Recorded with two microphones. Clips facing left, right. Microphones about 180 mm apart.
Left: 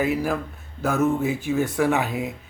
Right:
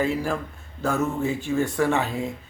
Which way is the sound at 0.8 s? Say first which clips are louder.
Left 3 dB; centre (ahead or behind).